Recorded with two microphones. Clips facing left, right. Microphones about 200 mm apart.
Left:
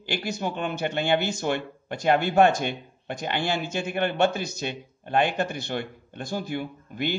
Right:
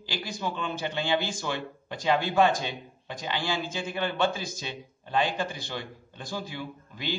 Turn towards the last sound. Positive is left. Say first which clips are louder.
# left 5 dB
turn(degrees=55)  # may be behind; listen again after turning